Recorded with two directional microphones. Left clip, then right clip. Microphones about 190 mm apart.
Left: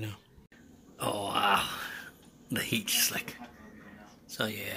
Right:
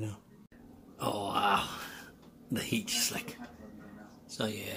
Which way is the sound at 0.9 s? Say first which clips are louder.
Left 1 dB; centre (ahead or behind).